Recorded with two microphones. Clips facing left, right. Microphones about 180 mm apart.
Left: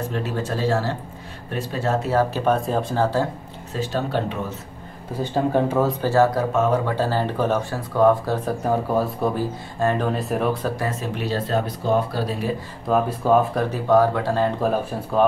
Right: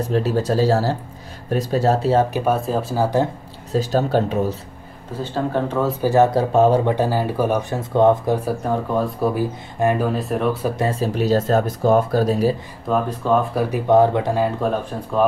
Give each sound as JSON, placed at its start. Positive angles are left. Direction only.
{"t": 0.1, "sound": "speech", "side_deg": -35}
{"t": 2.3, "sound": "speech", "side_deg": -5}
{"t": 3.7, "sound": "speech", "side_deg": -40}
{"t": 5.1, "sound": "speech", "side_deg": 15}
{"t": 5.8, "sound": "speech", "side_deg": 0}
{"t": 6.0, "sound": "speech", "side_deg": -20}
{"t": 7.9, "sound": "speech", "side_deg": -25}
{"t": 8.6, "sound": "speech", "side_deg": 0}
{"t": 9.3, "sound": "speech", "side_deg": -15}
{"t": 10.1, "sound": "speech", "side_deg": 0}
{"t": 10.8, "sound": "speech", "side_deg": -30}
{"t": 12.8, "sound": "speech", "side_deg": 5}
{"t": 13.8, "sound": "speech", "side_deg": -20}
{"t": 14.6, "sound": "speech", "side_deg": 5}